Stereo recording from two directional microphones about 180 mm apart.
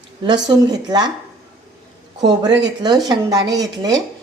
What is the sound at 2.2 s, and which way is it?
Speech, 20° right (ahead or behind).